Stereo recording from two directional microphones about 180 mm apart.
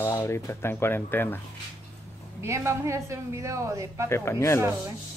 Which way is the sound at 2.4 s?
15° right (ahead or behind).